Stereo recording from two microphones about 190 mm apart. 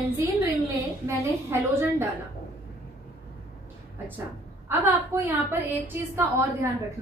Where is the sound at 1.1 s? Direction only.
15° right (ahead or behind).